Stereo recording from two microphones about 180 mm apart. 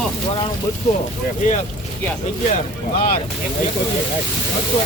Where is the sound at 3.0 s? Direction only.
55° left (ahead or behind).